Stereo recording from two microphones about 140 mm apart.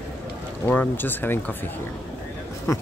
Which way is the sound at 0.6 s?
10° left (ahead or behind).